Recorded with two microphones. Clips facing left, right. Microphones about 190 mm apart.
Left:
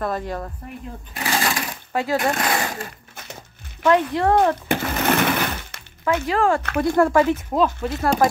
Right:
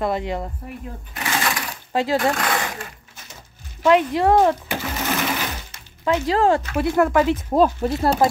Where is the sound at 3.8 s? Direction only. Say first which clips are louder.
Right 1 dB; 15° right (ahead or behind).